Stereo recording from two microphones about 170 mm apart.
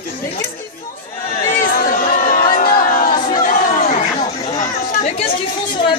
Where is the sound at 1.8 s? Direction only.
55° left (ahead or behind).